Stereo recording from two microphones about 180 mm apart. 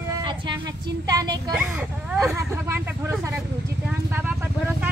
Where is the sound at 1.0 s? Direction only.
20° right (ahead or behind).